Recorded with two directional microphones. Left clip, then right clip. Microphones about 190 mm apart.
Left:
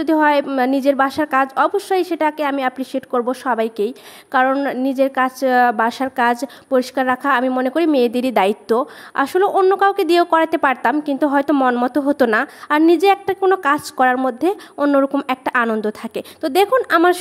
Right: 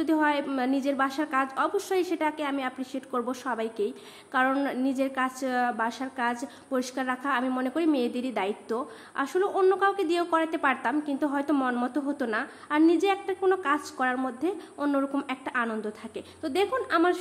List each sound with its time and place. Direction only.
0.0 s a woman's voice: 40° left (ahead or behind)